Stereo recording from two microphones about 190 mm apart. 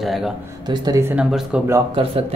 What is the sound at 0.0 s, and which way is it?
Speech, centre (ahead or behind).